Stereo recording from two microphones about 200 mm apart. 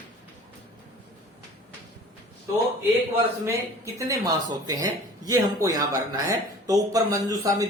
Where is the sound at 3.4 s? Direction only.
15° right (ahead or behind).